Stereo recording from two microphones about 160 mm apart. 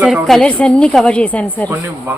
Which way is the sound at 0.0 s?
Centre (ahead or behind).